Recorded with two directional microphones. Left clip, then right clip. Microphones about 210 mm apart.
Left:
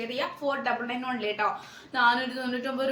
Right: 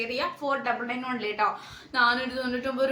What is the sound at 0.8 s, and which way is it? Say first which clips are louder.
A woman's voice: even; 15° right (ahead or behind).